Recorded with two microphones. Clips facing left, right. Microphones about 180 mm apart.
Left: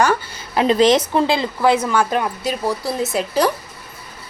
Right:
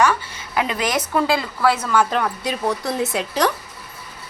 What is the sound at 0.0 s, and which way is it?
A woman's voice, 35° left (ahead or behind).